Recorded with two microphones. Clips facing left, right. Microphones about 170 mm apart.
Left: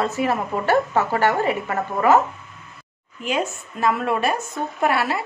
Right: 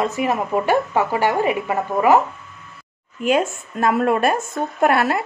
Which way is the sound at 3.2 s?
50° right (ahead or behind).